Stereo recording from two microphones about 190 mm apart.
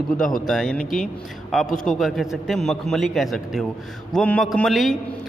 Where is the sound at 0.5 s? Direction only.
5° left (ahead or behind).